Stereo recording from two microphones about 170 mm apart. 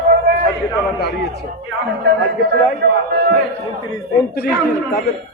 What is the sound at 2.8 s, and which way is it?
Speech, 75° right (ahead or behind).